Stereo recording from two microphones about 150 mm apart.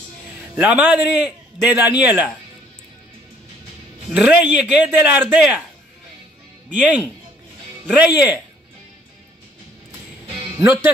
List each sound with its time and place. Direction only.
0.6 s speech: 10° right (ahead or behind)
4.1 s speech: 5° right (ahead or behind)
6.7 s speech: 10° right (ahead or behind)
10.6 s speech: 15° right (ahead or behind)